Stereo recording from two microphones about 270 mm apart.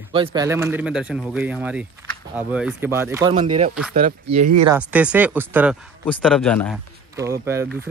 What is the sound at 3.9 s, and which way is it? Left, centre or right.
Speech, right.